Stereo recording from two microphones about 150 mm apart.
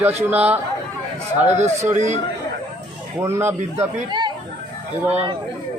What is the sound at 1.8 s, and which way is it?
Speech, 50° right (ahead or behind).